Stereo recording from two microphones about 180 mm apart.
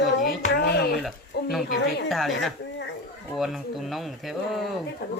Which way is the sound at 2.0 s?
Centre (ahead or behind).